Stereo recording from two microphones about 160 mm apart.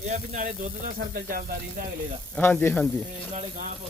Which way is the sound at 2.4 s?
10° left (ahead or behind).